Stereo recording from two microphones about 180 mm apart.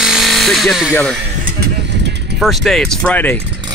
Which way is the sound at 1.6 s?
70° right (ahead or behind).